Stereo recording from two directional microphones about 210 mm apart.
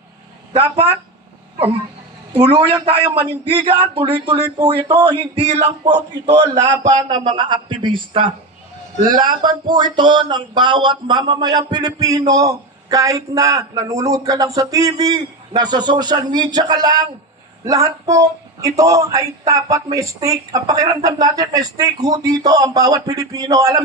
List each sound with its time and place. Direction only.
0.5 s speech: 25° right (ahead or behind)
2.4 s speech: 20° right (ahead or behind)
5.9 s a man's voice: 55° right (ahead or behind)
6.6 s speech: 20° right (ahead or behind)
9.0 s a man's voice: 40° right (ahead or behind)
9.8 s a man's voice: 20° right (ahead or behind)